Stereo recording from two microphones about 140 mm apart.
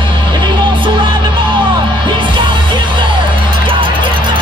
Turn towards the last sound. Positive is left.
turn(degrees=-35)  # may be behind; listen again after turning